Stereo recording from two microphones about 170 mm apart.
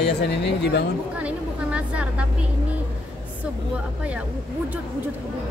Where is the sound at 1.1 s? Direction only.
5° right (ahead or behind).